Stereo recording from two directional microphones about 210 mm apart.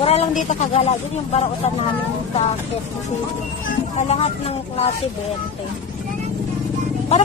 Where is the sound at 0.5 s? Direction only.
30° left (ahead or behind).